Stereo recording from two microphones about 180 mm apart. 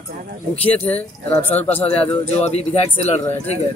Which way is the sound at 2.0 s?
35° left (ahead or behind).